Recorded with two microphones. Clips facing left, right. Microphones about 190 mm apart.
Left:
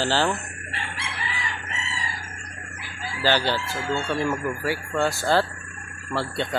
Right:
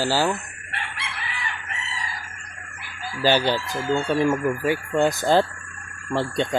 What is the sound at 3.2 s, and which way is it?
Speech, 15° right (ahead or behind).